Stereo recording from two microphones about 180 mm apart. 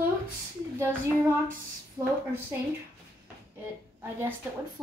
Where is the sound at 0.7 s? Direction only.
15° right (ahead or behind).